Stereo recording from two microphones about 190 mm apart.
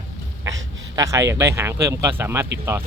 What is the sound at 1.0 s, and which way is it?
Speech, 15° right (ahead or behind).